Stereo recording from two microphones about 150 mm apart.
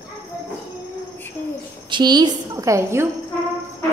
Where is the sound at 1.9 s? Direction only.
30° right (ahead or behind).